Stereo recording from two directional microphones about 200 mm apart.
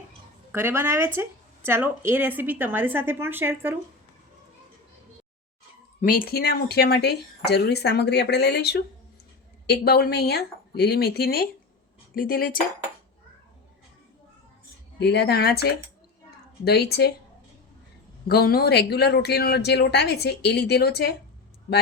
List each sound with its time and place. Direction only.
0.5 s a woman's voice: 10° right (ahead or behind)
6.0 s speech: 45° left (ahead or behind)
14.9 s speech: 55° left (ahead or behind)
18.3 s speech: 50° left (ahead or behind)